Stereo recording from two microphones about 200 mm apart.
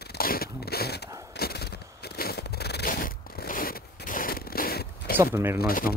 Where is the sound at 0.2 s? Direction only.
50° left (ahead or behind).